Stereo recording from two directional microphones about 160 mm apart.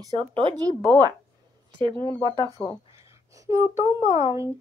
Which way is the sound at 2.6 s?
10° left (ahead or behind).